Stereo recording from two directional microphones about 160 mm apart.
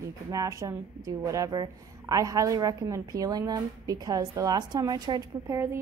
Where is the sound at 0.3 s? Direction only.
20° right (ahead or behind).